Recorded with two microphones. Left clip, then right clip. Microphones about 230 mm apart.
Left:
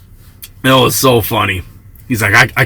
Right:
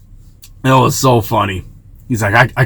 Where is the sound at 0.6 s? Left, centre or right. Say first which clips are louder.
Left 2 dB; left.